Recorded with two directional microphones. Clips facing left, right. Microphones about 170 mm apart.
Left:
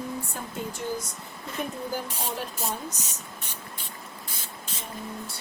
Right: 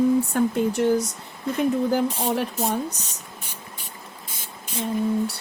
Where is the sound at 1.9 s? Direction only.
65° right (ahead or behind).